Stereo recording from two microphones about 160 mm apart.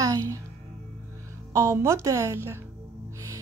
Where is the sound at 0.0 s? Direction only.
20° right (ahead or behind).